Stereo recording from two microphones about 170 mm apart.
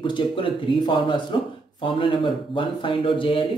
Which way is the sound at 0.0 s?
30° left (ahead or behind).